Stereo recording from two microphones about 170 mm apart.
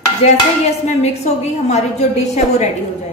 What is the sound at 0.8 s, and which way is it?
A woman's voice, 40° left (ahead or behind).